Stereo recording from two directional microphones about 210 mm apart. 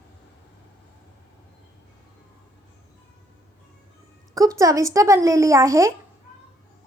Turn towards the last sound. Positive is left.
turn(degrees=-15)  # may be behind; listen again after turning